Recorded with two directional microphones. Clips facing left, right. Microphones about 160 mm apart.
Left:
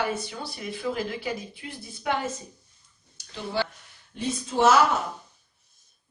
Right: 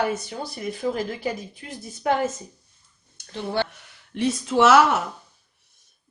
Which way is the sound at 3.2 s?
60° right (ahead or behind).